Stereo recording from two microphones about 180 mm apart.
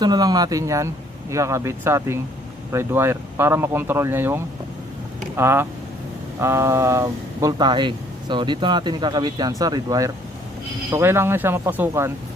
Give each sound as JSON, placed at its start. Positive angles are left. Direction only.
{"t": 0.0, "sound": "speech", "side_deg": -20}
{"t": 5.4, "sound": "speech", "side_deg": -15}